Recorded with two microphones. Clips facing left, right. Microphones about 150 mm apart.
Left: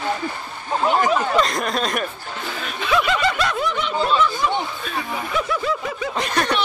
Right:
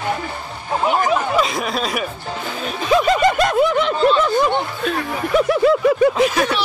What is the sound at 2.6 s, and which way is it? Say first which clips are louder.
Speech: right 4 dB; 35° right (ahead or behind).